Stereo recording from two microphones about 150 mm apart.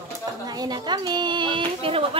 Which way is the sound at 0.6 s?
30° right (ahead or behind).